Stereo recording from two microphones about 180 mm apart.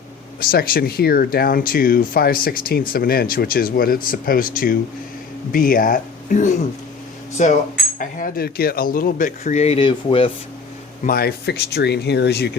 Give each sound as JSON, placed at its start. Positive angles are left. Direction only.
{"t": 0.3, "sound": "speech", "side_deg": 55}
{"t": 7.9, "sound": "speech", "side_deg": 55}
{"t": 11.0, "sound": "speech", "side_deg": 55}